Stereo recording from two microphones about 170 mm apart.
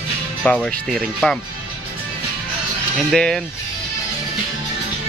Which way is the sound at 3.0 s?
Centre (ahead or behind).